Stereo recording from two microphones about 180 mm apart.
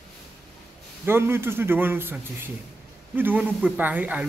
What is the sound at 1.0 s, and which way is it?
A man's voice, 15° right (ahead or behind).